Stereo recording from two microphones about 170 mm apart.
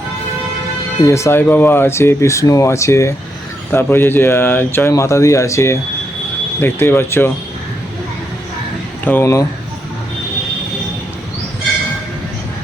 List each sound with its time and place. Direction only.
1.0 s speech: 15° left (ahead or behind)
9.0 s speech: 15° left (ahead or behind)